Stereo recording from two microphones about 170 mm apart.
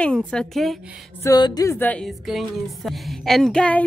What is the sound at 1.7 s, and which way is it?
A woman's voice, 10° left (ahead or behind).